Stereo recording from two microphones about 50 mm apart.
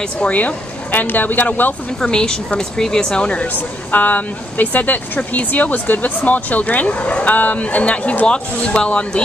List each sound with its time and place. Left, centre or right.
0.2 s speech: left
2.0 s speech: centre